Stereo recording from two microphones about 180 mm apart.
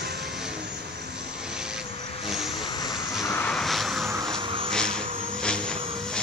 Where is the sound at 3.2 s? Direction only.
10° left (ahead or behind).